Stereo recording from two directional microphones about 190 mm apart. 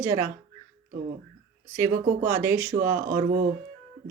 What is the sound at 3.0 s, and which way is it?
Speech, 45° right (ahead or behind).